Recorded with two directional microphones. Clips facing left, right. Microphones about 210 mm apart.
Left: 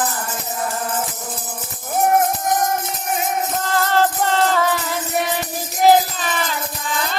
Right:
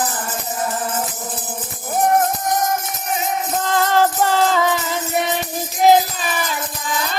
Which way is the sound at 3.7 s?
15° right (ahead or behind).